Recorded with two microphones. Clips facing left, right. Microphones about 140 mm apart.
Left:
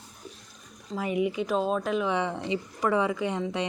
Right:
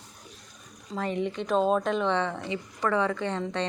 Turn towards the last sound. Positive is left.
turn(degrees=10)  # may be behind; listen again after turning